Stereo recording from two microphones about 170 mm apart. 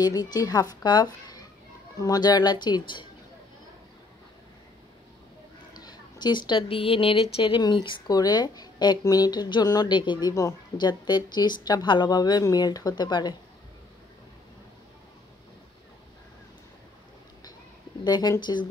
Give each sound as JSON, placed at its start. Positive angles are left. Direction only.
{"t": 0.0, "sound": "a woman's voice", "side_deg": 20}
{"t": 5.7, "sound": "a woman's voice", "side_deg": 25}
{"t": 18.0, "sound": "a woman's voice", "side_deg": 25}